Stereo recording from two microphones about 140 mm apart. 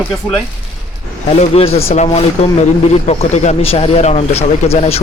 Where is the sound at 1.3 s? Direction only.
45° left (ahead or behind).